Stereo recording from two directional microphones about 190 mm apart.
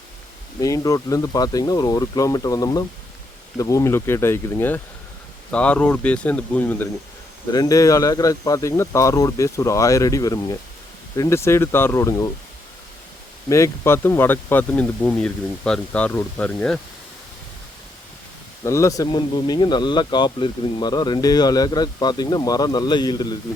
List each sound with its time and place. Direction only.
0.6 s speech: 20° left (ahead or behind)
7.5 s speech: 20° left (ahead or behind)
13.5 s speech: 15° left (ahead or behind)
18.6 s speech: 15° left (ahead or behind)